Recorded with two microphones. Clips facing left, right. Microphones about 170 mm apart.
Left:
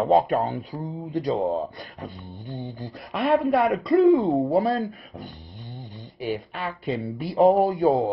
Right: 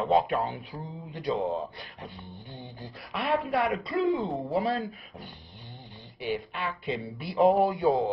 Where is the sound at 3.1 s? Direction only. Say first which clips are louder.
Left 7 dB; 45° left (ahead or behind).